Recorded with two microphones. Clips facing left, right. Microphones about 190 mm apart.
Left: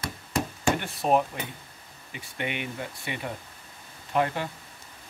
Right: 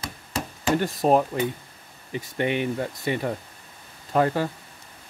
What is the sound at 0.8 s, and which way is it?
Speech, 40° right (ahead or behind).